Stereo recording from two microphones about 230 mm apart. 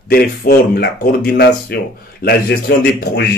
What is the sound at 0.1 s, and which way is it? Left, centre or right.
Speech, left.